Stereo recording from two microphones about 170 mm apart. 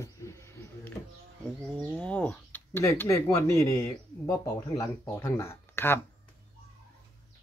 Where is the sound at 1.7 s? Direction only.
5° left (ahead or behind).